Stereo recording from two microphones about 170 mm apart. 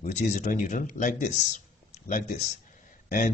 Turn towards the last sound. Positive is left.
turn(degrees=50)  # may be behind; listen again after turning